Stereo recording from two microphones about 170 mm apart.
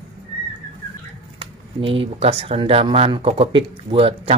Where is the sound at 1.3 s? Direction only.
30° right (ahead or behind).